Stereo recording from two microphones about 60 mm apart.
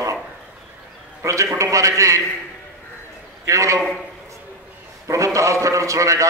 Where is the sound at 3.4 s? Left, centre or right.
Right.